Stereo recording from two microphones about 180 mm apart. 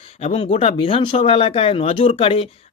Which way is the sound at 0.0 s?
35° left (ahead or behind).